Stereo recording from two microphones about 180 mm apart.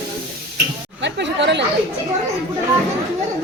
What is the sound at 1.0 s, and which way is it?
Chatter, 80° right.